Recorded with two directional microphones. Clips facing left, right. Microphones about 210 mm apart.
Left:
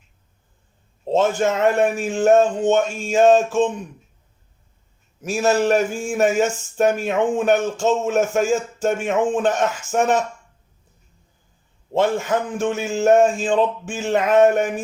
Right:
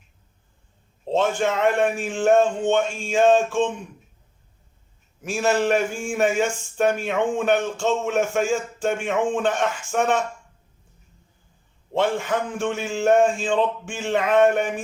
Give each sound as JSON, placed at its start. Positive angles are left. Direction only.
{"t": 1.1, "sound": "speech", "side_deg": 40}
{"t": 5.2, "sound": "speech", "side_deg": 40}
{"t": 11.9, "sound": "speech", "side_deg": 40}